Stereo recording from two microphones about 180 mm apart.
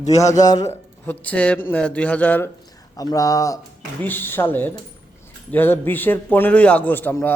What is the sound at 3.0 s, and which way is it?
A man's voice, 20° left (ahead or behind).